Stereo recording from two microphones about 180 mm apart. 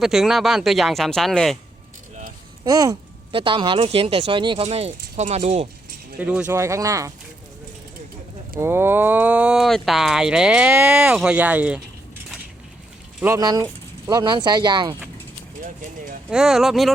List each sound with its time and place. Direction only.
0.0 s speech: centre (ahead or behind)
2.6 s speech: 20° right (ahead or behind)
6.1 s speech: 10° right (ahead or behind)
8.5 s speech: 15° right (ahead or behind)
13.1 s speech: 15° right (ahead or behind)
16.3 s speech: 5° right (ahead or behind)